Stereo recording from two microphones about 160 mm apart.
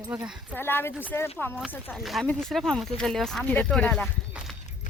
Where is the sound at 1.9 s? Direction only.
Centre (ahead or behind).